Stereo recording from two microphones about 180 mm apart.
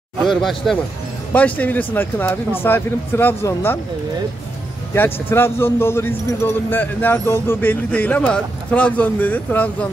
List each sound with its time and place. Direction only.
0.2 s speech: centre (ahead or behind)
4.9 s speech: 10° left (ahead or behind)